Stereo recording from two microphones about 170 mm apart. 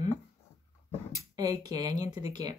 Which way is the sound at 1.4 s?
20° right (ahead or behind).